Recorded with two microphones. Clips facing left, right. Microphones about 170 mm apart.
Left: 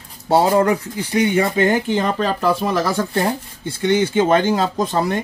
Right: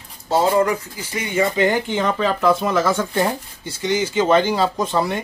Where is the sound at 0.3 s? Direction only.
65° left (ahead or behind).